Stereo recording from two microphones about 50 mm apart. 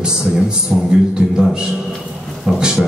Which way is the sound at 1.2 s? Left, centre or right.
Right.